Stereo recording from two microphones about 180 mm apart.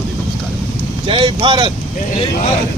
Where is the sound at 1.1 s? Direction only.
25° right (ahead or behind).